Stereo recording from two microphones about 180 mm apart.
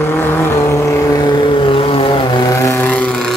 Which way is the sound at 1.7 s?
30° left (ahead or behind).